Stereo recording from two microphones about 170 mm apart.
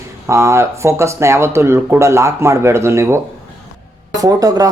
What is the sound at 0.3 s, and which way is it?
Speech, 15° right (ahead or behind).